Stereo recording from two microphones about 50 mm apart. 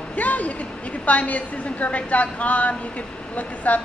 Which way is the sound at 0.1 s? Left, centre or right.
Left.